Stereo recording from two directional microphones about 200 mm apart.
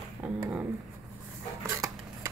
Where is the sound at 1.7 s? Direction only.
15° right (ahead or behind).